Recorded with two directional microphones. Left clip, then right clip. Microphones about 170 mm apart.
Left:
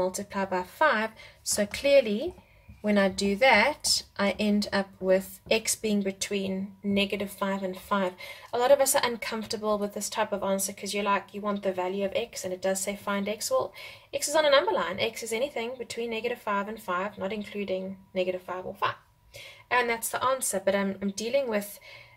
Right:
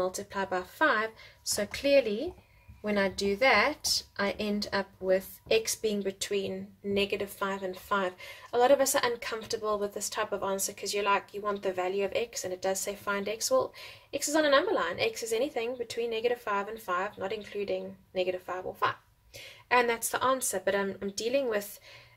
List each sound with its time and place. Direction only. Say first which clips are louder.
0.0 s speech: left 2 dB; 15° right (ahead or behind)